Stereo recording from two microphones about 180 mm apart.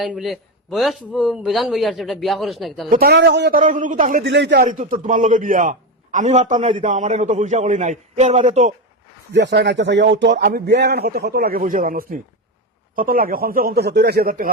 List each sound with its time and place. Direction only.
0.0 s a man's voice: centre (ahead or behind)
2.9 s speech: 60° right (ahead or behind)
3.6 s a man's voice: 45° right (ahead or behind)
4.2 s speech: 75° right (ahead or behind)
4.6 s a man's voice: 45° right (ahead or behind)
9.3 s a man's voice: 70° right (ahead or behind); by 14.5 s 55° right (ahead or behind)